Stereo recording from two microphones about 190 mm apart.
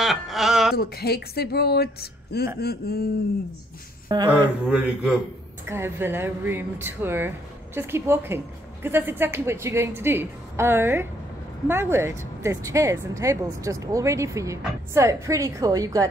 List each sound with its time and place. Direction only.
0.0 s a sound: centre (ahead or behind)
0.7 s speech: 55° left (ahead or behind)
4.1 s speech: 20° right (ahead or behind)
4.6 s speech: 5° right (ahead or behind)